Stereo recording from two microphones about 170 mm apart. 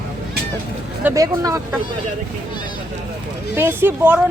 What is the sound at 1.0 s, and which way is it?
Speech, 20° right (ahead or behind).